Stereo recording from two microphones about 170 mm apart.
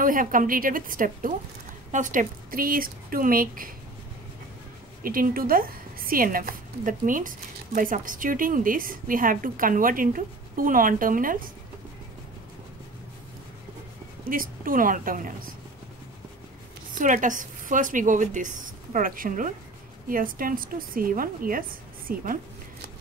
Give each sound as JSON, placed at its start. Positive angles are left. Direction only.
{"t": 0.0, "sound": "a woman's voice", "side_deg": -55}
{"t": 5.0, "sound": "a woman's voice", "side_deg": -55}
{"t": 14.2, "sound": "a woman's voice", "side_deg": -55}
{"t": 16.9, "sound": "a woman's voice", "side_deg": -50}